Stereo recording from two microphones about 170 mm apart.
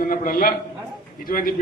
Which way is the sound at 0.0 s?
55° left (ahead or behind).